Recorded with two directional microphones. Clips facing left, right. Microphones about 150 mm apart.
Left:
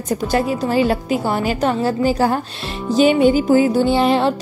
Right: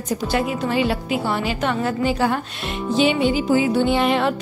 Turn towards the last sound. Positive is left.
turn(degrees=35)  # may be behind; listen again after turning